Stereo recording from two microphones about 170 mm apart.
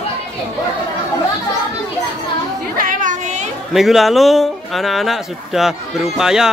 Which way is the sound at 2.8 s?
50° right (ahead or behind).